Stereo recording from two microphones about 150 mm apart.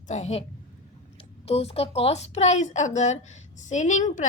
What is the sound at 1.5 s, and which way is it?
Speech, 45° left (ahead or behind).